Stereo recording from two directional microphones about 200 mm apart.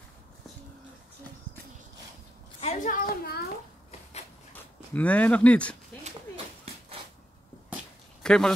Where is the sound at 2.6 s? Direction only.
35° left (ahead or behind).